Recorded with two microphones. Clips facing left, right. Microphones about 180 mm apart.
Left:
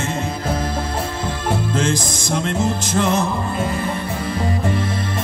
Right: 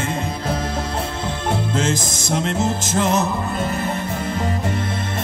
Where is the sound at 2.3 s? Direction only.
50° left (ahead or behind).